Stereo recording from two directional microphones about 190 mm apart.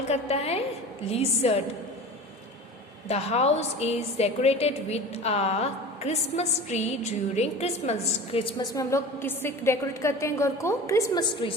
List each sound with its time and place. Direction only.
0.1 s a sound: 35° left (ahead or behind)
1.1 s a woman's voice: 35° left (ahead or behind)
3.1 s a woman's voice: 35° left (ahead or behind)